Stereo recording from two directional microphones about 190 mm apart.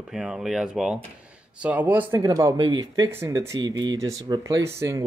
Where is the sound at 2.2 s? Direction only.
20° right (ahead or behind).